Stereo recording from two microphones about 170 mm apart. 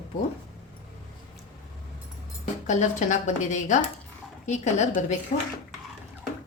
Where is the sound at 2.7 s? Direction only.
45° left (ahead or behind).